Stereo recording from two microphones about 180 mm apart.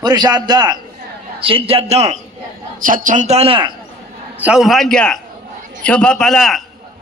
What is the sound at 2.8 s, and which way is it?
Speech, 50° right (ahead or behind).